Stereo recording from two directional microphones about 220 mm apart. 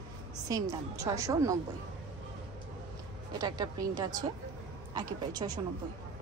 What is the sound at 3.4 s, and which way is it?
A woman's voice, 20° right (ahead or behind).